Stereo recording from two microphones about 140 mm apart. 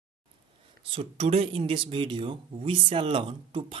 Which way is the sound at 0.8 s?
45° right (ahead or behind).